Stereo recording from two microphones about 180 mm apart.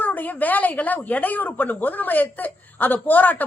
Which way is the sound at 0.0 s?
10° left (ahead or behind).